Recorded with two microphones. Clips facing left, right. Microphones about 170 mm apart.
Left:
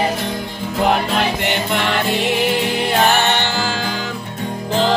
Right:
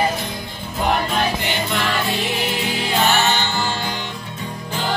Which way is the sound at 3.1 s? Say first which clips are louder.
Left 2 dB; 55° left (ahead or behind).